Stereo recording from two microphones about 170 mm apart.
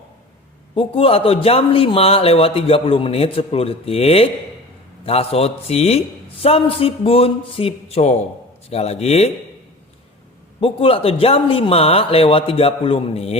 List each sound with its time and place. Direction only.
0.7 s a man's voice: 35° left (ahead or behind)
10.6 s a man's voice: 35° left (ahead or behind)